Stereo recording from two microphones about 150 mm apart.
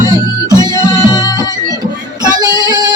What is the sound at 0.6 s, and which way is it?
Music, 25° left (ahead or behind).